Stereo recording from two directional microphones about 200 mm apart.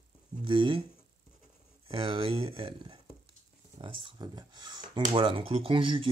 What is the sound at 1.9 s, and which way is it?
Speech, 25° right (ahead or behind).